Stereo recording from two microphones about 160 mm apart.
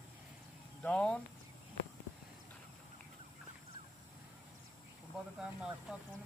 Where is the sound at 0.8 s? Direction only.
5° left (ahead or behind).